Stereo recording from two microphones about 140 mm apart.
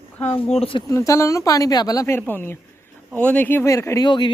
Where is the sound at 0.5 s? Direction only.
40° left (ahead or behind).